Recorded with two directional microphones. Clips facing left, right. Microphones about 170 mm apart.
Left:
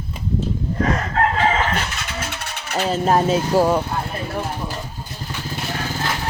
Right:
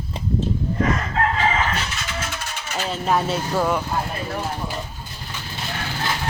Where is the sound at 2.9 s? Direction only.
40° left (ahead or behind).